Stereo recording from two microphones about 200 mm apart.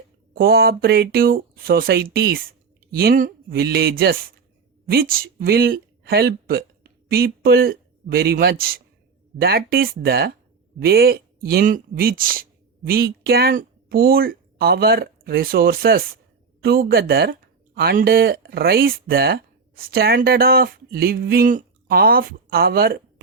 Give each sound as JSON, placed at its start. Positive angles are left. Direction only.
{"t": 0.3, "sound": "speech", "side_deg": -50}